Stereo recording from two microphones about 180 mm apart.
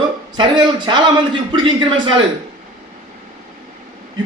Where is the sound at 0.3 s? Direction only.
25° right (ahead or behind).